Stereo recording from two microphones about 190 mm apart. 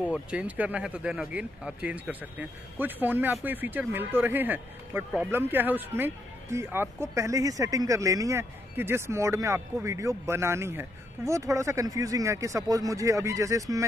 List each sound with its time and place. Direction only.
0.0 s speech: 5° right (ahead or behind)